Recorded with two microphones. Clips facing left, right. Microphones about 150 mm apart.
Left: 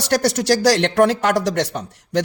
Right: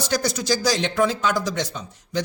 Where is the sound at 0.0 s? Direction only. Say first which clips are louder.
Left 6 dB; 75° left (ahead or behind).